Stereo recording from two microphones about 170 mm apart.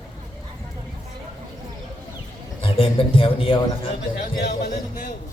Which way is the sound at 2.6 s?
30° left (ahead or behind).